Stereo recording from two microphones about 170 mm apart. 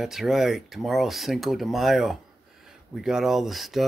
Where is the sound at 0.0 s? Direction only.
Centre (ahead or behind).